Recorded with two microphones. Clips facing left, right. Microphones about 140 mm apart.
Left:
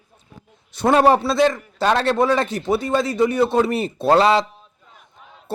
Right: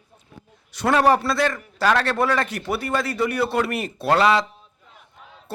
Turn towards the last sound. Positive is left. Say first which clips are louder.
# left 3 dB
turn(degrees=25)  # may be behind; listen again after turning